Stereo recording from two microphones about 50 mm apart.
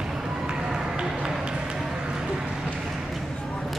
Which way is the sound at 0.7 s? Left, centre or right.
Centre.